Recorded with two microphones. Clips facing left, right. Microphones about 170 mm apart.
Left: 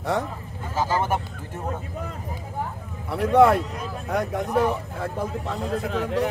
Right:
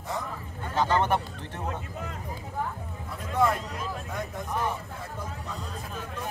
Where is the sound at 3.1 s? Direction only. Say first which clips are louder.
Left 10 dB; 70° left (ahead or behind).